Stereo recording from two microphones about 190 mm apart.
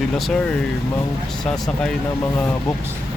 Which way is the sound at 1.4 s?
5° left (ahead or behind).